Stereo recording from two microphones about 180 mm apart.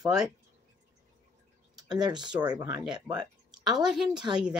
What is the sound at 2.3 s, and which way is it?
Speech, 5° right (ahead or behind).